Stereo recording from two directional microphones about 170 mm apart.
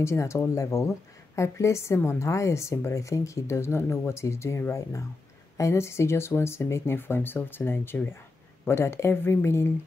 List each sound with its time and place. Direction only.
0.0 s speech: 15° left (ahead or behind)